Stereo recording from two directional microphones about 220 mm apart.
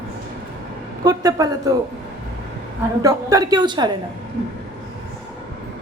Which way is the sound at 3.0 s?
15° right (ahead or behind).